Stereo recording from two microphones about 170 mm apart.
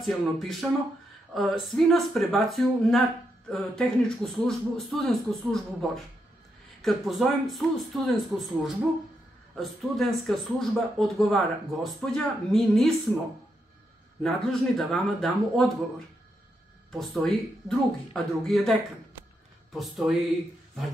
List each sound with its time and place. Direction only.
0.0 s speech: centre (ahead or behind)
14.2 s speech: centre (ahead or behind)
16.9 s speech: centre (ahead or behind)